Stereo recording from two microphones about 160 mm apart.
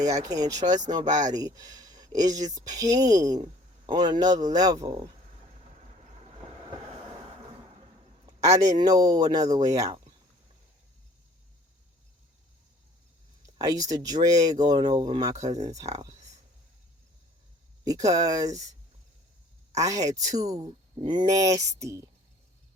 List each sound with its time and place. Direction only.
0.0 s speech: 20° right (ahead or behind)
8.3 s a sound: 20° right (ahead or behind)
8.8 s speech: 25° right (ahead or behind)
13.4 s speech: 20° right (ahead or behind)
15.9 s speech: 45° right (ahead or behind)
17.8 s speech: 20° right (ahead or behind)
19.7 s speech: 20° right (ahead or behind)
20.6 s speech: 35° right (ahead or behind)